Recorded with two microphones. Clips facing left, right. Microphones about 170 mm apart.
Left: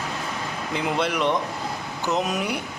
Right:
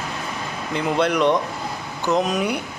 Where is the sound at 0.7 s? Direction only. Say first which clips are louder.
Right 4 dB; 5° left (ahead or behind).